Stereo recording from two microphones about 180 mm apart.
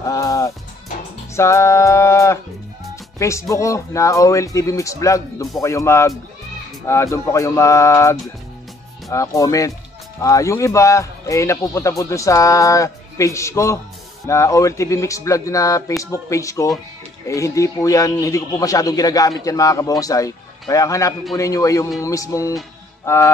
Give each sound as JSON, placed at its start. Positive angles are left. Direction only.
{"t": 0.0, "sound": "music", "side_deg": 20}
{"t": 3.2, "sound": "a man's voice", "side_deg": 15}